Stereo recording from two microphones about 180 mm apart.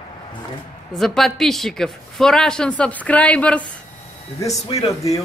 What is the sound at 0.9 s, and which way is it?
A woman's voice, centre (ahead or behind).